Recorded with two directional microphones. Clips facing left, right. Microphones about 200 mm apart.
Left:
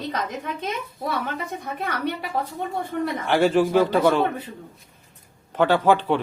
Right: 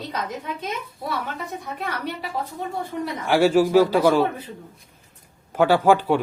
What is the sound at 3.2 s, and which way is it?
A man's voice, 10° right (ahead or behind).